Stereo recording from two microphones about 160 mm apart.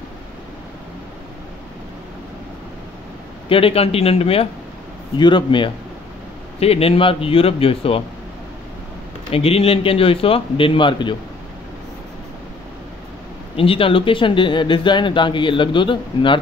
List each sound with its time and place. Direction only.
3.4 s a man's voice: 35° left (ahead or behind)
9.3 s speech: 40° left (ahead or behind)
13.6 s speech: 35° left (ahead or behind)